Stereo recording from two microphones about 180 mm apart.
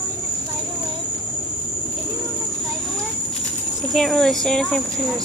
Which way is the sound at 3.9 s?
Centre (ahead or behind).